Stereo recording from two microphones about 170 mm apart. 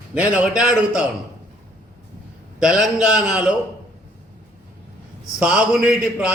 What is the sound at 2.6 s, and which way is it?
Speech, 5° right (ahead or behind).